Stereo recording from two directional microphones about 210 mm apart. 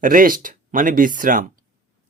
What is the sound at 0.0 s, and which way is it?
Speech, 40° right (ahead or behind).